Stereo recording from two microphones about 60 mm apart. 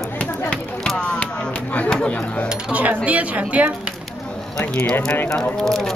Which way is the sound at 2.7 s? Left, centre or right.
Right.